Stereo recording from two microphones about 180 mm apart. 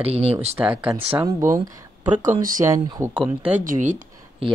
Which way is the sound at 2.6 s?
20° right (ahead or behind).